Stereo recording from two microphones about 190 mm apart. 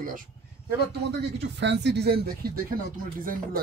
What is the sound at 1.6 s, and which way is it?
Speech, 65° right (ahead or behind).